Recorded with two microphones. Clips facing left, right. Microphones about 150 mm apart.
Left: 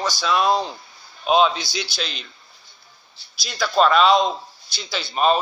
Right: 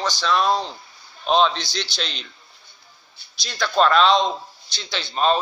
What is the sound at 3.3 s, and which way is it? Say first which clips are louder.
A man's voice: left 1 dB; 5° left (ahead or behind).